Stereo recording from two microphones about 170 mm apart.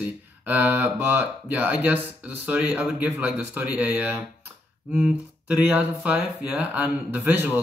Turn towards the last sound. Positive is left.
turn(degrees=-10)  # may be behind; listen again after turning